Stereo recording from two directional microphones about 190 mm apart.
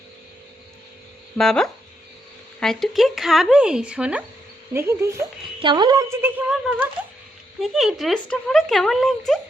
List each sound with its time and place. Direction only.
1.4 s a woman's voice: centre (ahead or behind)